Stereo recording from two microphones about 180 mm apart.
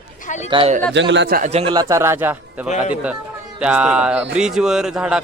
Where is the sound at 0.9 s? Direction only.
80° right.